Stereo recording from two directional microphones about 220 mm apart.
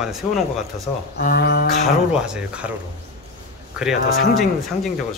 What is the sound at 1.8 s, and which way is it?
Speech, 5° right (ahead or behind).